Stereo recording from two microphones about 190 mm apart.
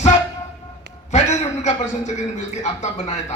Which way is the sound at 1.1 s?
35° left (ahead or behind).